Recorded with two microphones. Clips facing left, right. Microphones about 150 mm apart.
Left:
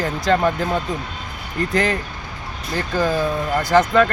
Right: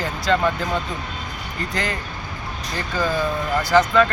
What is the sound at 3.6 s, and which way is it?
Speech, 45° left (ahead or behind).